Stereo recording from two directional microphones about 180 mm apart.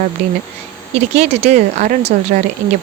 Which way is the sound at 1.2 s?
35° right (ahead or behind).